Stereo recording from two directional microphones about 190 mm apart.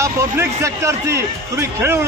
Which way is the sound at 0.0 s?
15° right (ahead or behind).